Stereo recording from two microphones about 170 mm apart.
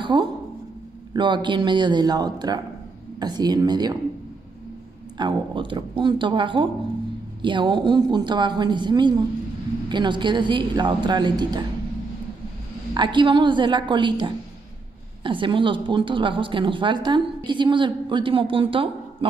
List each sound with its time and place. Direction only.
0.0 s a sound: 30° right (ahead or behind)
1.1 s a woman's voice: 25° right (ahead or behind)
5.1 s a woman's voice: 25° right (ahead or behind)
12.9 s a woman's voice: 25° right (ahead or behind)